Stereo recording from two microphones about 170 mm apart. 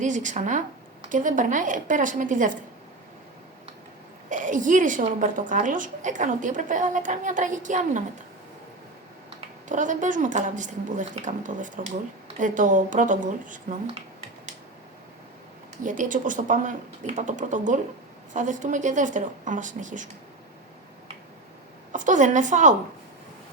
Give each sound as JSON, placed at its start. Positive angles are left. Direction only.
{"t": 0.0, "sound": "a woman's voice", "side_deg": -45}
{"t": 4.3, "sound": "a woman's voice", "side_deg": -50}
{"t": 9.6, "sound": "a woman's voice", "side_deg": -50}
{"t": 15.8, "sound": "a woman's voice", "side_deg": -50}
{"t": 21.9, "sound": "a woman's voice", "side_deg": -50}